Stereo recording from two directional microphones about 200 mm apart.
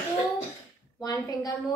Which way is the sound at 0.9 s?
20° left (ahead or behind).